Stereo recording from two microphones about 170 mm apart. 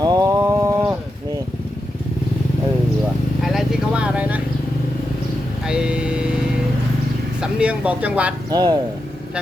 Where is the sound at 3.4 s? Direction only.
Centre (ahead or behind).